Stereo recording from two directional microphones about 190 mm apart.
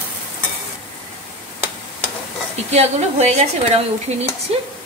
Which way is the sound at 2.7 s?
35° right (ahead or behind).